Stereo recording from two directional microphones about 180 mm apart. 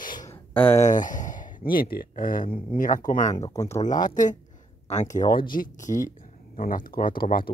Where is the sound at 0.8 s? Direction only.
45° left (ahead or behind).